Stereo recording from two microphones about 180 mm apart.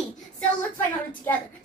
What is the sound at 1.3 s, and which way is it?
Speech, 15° left (ahead or behind).